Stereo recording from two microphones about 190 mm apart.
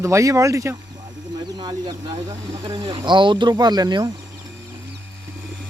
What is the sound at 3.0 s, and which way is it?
Speech, 25° right (ahead or behind).